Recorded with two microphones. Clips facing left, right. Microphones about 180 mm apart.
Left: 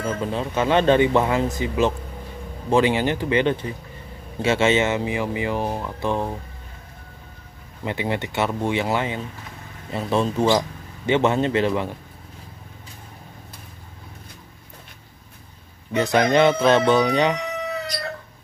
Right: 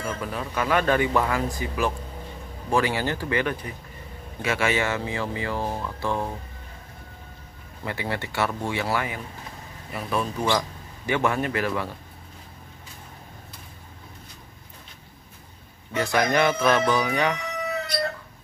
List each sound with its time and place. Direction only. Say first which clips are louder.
0.0 s speech: left 5 dB; 25° left (ahead or behind)
7.8 s speech: left 5 dB; 20° left (ahead or behind)
15.9 s speech: left 4 dB; 20° left (ahead or behind)